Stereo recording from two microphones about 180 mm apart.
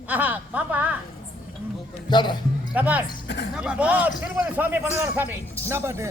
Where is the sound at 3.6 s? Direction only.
5° right (ahead or behind).